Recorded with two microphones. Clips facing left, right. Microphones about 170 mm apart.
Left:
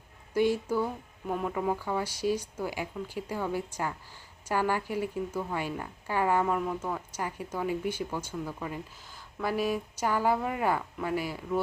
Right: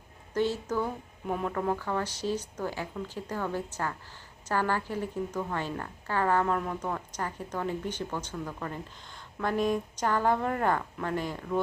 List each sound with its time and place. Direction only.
0.3 s a woman's voice: 10° left (ahead or behind)